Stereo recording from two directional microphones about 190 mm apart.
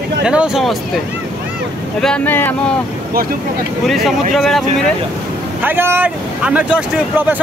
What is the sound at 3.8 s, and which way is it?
Speech, centre (ahead or behind).